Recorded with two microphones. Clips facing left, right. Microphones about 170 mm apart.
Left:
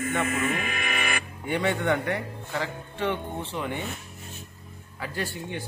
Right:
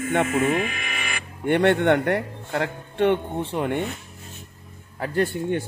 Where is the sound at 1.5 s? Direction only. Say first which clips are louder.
Right 7 dB; 65° right (ahead or behind).